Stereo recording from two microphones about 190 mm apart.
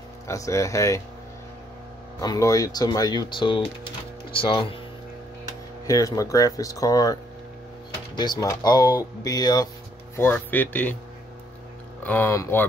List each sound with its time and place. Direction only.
0.3 s speech: 15° left (ahead or behind)
2.1 s speech: 15° left (ahead or behind)
5.9 s speech: 20° left (ahead or behind)
8.2 s speech: 20° left (ahead or behind)
12.0 s speech: 10° left (ahead or behind)